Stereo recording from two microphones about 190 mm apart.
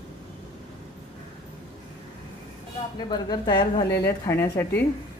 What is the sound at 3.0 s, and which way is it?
A woman's voice, 20° left (ahead or behind).